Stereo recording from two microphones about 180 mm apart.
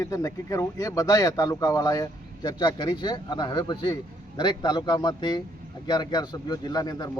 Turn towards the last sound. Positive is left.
turn(degrees=20)  # may be behind; listen again after turning